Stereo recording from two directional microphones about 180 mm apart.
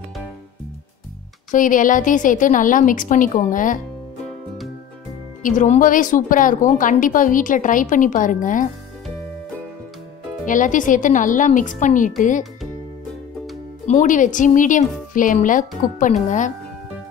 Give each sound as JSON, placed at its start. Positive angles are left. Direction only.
{"t": 1.5, "sound": "a woman's voice", "side_deg": 45}
{"t": 5.4, "sound": "a woman's voice", "side_deg": 45}
{"t": 10.4, "sound": "a woman's voice", "side_deg": 45}
{"t": 13.8, "sound": "a woman's voice", "side_deg": 45}